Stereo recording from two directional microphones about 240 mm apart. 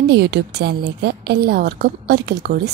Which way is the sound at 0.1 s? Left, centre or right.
Right.